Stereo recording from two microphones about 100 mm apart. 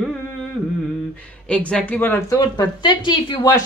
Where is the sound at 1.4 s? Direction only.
10° left (ahead or behind).